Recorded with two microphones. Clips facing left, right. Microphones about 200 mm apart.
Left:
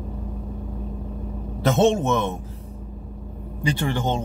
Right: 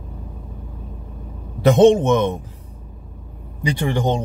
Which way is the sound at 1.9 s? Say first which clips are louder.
Right 6 dB; 15° right (ahead or behind).